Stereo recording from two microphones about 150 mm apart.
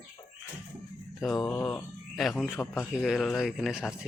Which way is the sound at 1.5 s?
15° left (ahead or behind).